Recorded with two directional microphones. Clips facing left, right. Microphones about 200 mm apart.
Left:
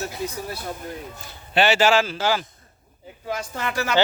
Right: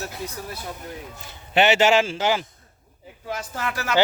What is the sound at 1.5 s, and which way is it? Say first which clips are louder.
Speech: right 1 dB; 20° right (ahead or behind).